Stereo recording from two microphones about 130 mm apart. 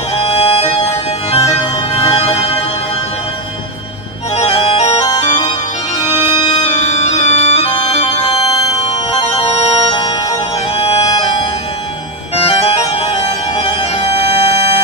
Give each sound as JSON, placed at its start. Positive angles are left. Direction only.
{"t": 0.1, "sound": "music", "side_deg": 50}
{"t": 4.4, "sound": "music", "side_deg": 50}
{"t": 5.2, "sound": "organ", "side_deg": 55}
{"t": 8.8, "sound": "music", "side_deg": 50}
{"t": 12.4, "sound": "music", "side_deg": 50}